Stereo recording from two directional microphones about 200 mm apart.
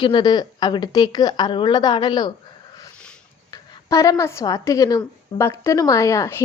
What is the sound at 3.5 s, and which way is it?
Speech, 15° left (ahead or behind).